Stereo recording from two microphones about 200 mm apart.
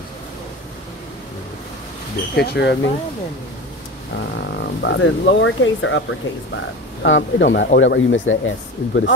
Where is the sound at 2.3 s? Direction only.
55° left (ahead or behind).